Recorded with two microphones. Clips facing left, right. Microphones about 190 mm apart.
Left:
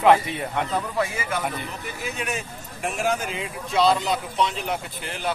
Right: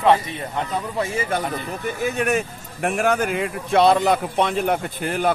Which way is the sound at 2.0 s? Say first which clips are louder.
Right 9 dB; 55° right (ahead or behind).